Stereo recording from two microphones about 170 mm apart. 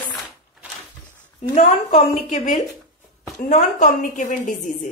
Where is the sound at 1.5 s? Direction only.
40° left (ahead or behind).